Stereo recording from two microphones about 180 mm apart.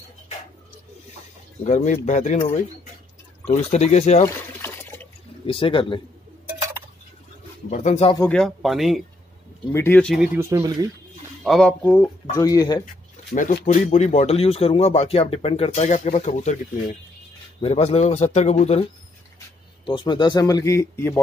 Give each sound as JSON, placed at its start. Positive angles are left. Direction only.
{"t": 1.6, "sound": "speech", "side_deg": 40}
{"t": 4.2, "sound": "liquid", "side_deg": 10}
{"t": 5.5, "sound": "speech", "side_deg": 30}
{"t": 7.7, "sound": "speech", "side_deg": 40}
{"t": 8.3, "sound": "speech", "side_deg": 5}
{"t": 9.7, "sound": "speech", "side_deg": 15}
{"t": 10.1, "sound": "speech", "side_deg": -10}
{"t": 11.4, "sound": "speech", "side_deg": 5}
{"t": 12.8, "sound": "speech", "side_deg": 50}
{"t": 17.6, "sound": "speech", "side_deg": 35}
{"t": 19.9, "sound": "speech", "side_deg": 25}